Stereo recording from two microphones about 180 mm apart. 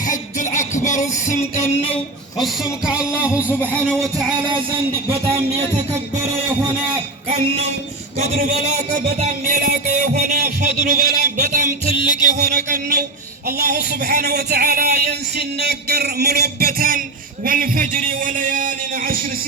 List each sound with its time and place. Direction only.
0.0 s music: 45° left (ahead or behind)
2.4 s music: 5° right (ahead or behind)
7.3 s music: 35° right (ahead or behind)
9.5 s a man's voice: 45° right (ahead or behind); by 11.3 s 65° right (ahead or behind)
11.3 s music: 45° right (ahead or behind)
12.4 s a man's voice: 55° right (ahead or behind)